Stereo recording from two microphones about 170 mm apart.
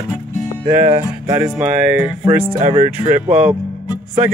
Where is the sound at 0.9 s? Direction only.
20° right (ahead or behind).